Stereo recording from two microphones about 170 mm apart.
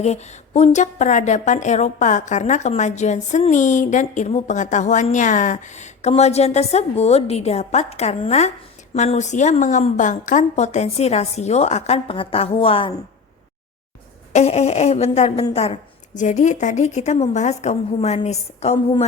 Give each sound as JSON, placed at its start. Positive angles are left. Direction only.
{"t": 0.0, "sound": "a woman's voice", "side_deg": 40}
{"t": 14.3, "sound": "a woman's voice", "side_deg": 40}